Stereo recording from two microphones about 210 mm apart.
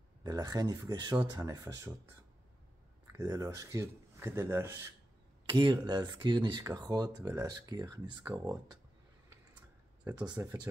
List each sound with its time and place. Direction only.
0.2 s speech: 20° right (ahead or behind)
3.1 s speech: 15° right (ahead or behind)
10.3 s speech: 15° right (ahead or behind)